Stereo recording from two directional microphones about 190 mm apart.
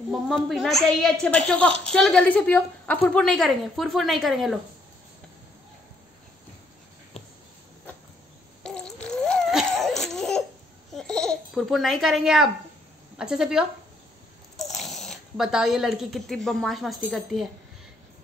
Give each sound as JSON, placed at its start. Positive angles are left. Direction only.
{"t": 0.1, "sound": "a woman's voice", "side_deg": 0}
{"t": 7.2, "sound": "a sound", "side_deg": 30}
{"t": 8.6, "sound": "laughter", "side_deg": 5}
{"t": 10.9, "sound": "babbling", "side_deg": 5}
{"t": 13.2, "sound": "a woman's voice", "side_deg": -5}